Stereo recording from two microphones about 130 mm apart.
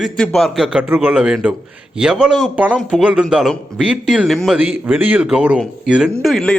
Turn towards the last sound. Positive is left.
turn(degrees=0)  # may be behind; listen again after turning